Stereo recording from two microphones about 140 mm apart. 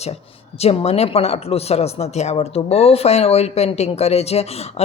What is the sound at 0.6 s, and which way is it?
Speech, 45° left (ahead or behind).